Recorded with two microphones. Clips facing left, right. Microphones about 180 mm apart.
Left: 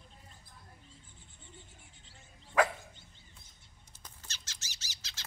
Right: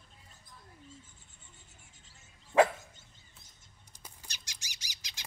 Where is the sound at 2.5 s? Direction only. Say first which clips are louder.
Right 4 dB; 25° right (ahead or behind).